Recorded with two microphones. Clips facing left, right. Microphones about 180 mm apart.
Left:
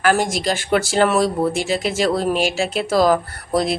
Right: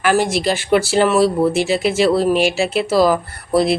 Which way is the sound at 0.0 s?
45° left (ahead or behind).